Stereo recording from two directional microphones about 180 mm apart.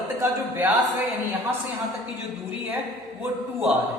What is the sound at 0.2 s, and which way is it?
Speech, 15° right (ahead or behind).